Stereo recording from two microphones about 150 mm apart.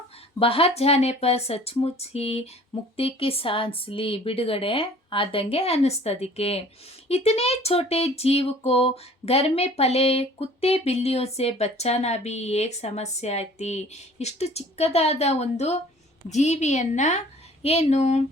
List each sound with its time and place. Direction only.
0.3 s speech: 40° left (ahead or behind)